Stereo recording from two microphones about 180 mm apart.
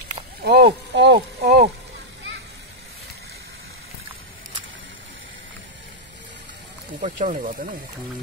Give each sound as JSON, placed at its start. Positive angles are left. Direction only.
{"t": 0.4, "sound": "a sound", "side_deg": -65}
{"t": 0.9, "sound": "speech", "side_deg": -70}
{"t": 7.0, "sound": "speech", "side_deg": -45}